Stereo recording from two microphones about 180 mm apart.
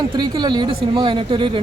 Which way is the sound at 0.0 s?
25° right (ahead or behind).